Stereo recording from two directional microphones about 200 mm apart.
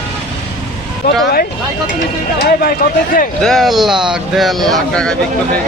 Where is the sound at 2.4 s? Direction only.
45° left (ahead or behind).